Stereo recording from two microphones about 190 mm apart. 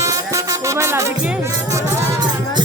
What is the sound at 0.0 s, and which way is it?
Music, 15° right (ahead or behind).